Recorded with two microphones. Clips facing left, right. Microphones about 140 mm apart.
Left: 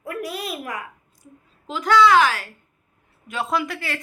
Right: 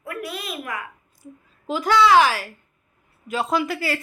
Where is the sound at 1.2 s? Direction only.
10° right (ahead or behind).